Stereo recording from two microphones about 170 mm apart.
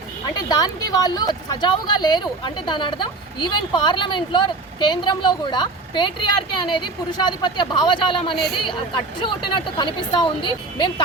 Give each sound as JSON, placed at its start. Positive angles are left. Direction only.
{"t": 0.3, "sound": "speech", "side_deg": 25}